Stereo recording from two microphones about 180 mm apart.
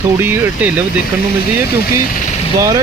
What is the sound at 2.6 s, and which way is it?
Speech, 15° right (ahead or behind).